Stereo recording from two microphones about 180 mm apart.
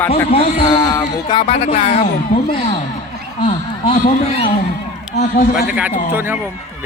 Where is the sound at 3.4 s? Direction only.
30° left (ahead or behind).